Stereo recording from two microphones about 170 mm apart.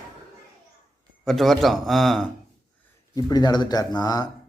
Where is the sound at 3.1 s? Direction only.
20° left (ahead or behind).